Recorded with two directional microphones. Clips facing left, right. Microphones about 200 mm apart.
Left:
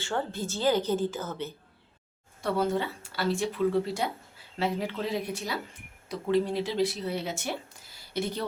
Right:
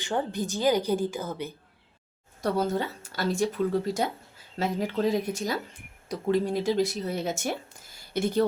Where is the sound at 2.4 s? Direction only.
40° right (ahead or behind).